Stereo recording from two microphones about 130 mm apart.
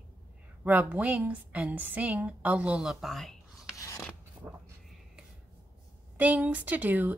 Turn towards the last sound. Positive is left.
turn(degrees=-15)  # may be behind; listen again after turning